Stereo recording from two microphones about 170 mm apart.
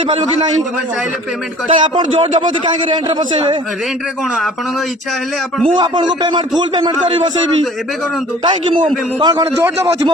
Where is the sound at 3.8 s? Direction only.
5° right (ahead or behind).